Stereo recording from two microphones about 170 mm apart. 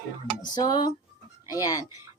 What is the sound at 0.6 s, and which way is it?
Speech, 25° left (ahead or behind).